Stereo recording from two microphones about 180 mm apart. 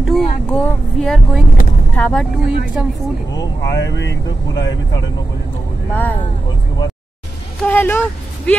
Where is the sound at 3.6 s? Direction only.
75° left (ahead or behind).